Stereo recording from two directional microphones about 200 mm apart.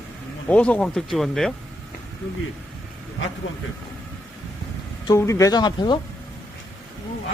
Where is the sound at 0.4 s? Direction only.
5° left (ahead or behind).